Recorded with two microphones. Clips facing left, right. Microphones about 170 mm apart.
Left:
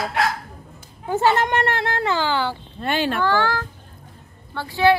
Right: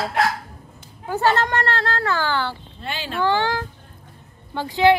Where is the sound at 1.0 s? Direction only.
20° left (ahead or behind).